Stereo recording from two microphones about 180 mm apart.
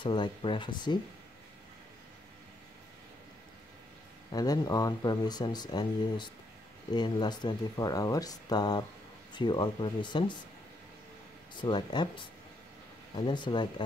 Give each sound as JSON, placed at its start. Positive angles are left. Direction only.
{"t": 0.0, "sound": "speech", "side_deg": 25}
{"t": 4.3, "sound": "speech", "side_deg": 20}
{"t": 11.5, "sound": "speech", "side_deg": 25}